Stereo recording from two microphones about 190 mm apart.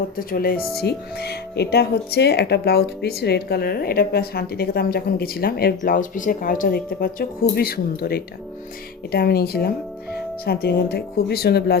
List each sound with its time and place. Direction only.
0.2 s speech: 50° left (ahead or behind)